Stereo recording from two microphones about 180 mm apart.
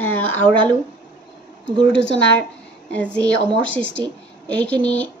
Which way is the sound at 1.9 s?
80° left.